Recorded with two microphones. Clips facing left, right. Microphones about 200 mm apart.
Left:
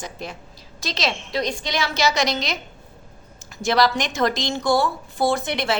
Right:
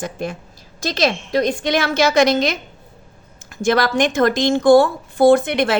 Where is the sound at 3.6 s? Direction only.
50° right (ahead or behind).